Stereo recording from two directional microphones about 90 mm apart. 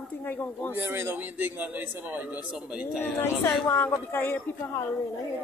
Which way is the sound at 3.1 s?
30° left (ahead or behind).